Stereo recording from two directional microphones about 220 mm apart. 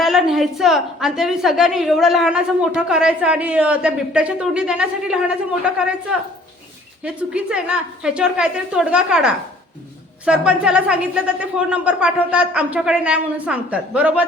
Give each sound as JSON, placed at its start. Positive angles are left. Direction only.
{"t": 0.0, "sound": "a woman's voice", "side_deg": 0}